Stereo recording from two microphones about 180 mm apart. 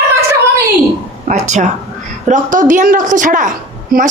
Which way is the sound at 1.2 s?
40° right (ahead or behind).